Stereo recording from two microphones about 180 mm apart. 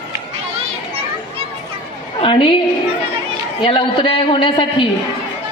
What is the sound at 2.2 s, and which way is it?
Speech, 30° left (ahead or behind).